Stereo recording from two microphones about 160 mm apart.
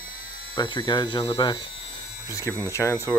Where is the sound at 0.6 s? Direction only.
30° left (ahead or behind).